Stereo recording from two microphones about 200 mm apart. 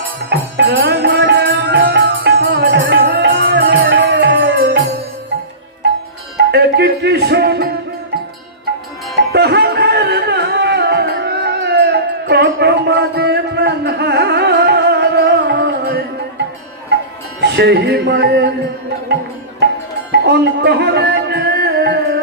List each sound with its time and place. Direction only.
0.3 s music: 55° right (ahead or behind)
6.3 s music: 55° right (ahead or behind)
9.3 s music: 55° right (ahead or behind)
17.4 s music: 55° right (ahead or behind)
20.1 s music: 55° right (ahead or behind)